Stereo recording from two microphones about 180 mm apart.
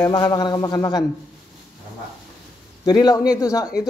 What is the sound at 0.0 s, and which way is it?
A man's voice, 25° left (ahead or behind).